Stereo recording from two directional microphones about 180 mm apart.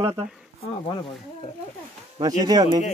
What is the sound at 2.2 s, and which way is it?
Speech, 20° right (ahead or behind).